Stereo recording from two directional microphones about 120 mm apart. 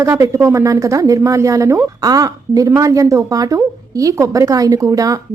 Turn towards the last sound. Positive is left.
turn(degrees=-30)  # may be behind; listen again after turning